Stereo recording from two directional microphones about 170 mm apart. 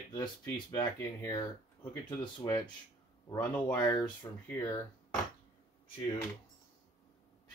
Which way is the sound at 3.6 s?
20° left (ahead or behind).